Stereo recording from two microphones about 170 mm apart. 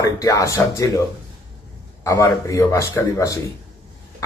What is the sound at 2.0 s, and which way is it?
A man's voice, 20° left (ahead or behind).